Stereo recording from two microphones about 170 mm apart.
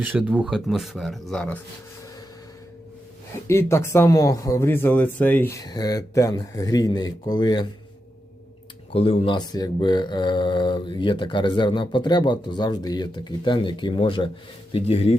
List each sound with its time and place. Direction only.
0.0 s speech: 10° right (ahead or behind); by 1.6 s 5° left (ahead or behind)
3.4 s speech: 15° left (ahead or behind)
8.9 s speech: 35° left (ahead or behind)